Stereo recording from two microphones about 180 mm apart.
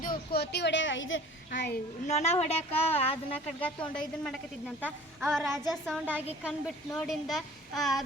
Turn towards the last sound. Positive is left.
turn(degrees=0)  # may be behind; listen again after turning